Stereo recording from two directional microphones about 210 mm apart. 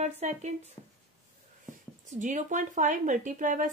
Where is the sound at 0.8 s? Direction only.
20° left (ahead or behind).